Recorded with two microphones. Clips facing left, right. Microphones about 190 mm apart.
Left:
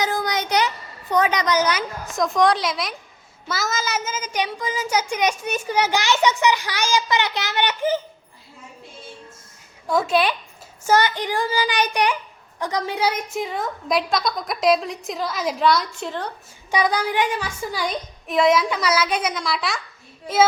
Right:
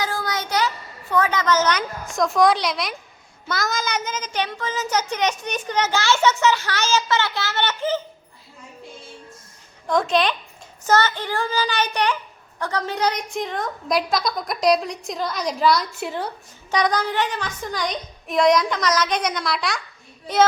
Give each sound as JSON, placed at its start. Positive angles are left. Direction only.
{"t": 0.0, "sound": "child singing", "side_deg": 20}
{"t": 1.1, "sound": "a woman's voice", "side_deg": 15}
{"t": 9.8, "sound": "a child's voice", "side_deg": 5}
{"t": 16.0, "sound": "a woman's voice", "side_deg": -10}
{"t": 16.7, "sound": "a child's voice", "side_deg": 10}